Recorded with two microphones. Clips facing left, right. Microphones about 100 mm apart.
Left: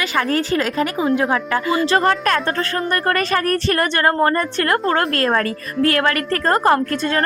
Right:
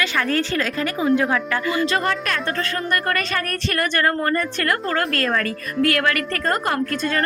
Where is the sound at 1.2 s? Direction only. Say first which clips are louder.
Left 2 dB; 30° left (ahead or behind).